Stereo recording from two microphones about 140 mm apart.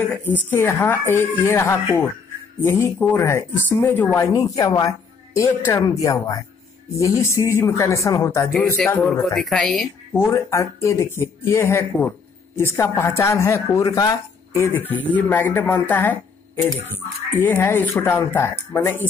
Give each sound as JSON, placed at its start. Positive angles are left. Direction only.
{"t": 0.1, "sound": "a woman's voice", "side_deg": 10}
{"t": 9.3, "sound": "a woman's voice", "side_deg": 0}
{"t": 10.1, "sound": "a woman's voice", "side_deg": 20}